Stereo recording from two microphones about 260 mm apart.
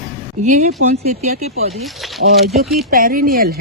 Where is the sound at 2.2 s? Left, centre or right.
Right.